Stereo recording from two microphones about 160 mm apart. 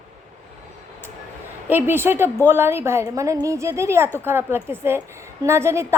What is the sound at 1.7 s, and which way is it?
A woman's voice, 15° right (ahead or behind).